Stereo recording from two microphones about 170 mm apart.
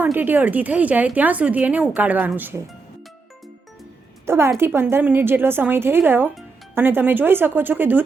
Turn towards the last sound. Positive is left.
turn(degrees=-10)  # may be behind; listen again after turning